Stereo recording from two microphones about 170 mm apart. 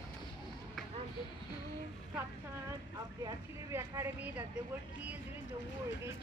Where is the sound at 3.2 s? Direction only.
15° right (ahead or behind).